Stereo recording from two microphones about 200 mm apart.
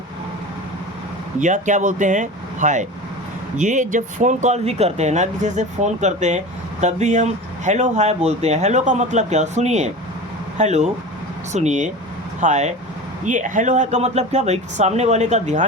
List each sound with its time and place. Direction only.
1.4 s speech: 40° right (ahead or behind)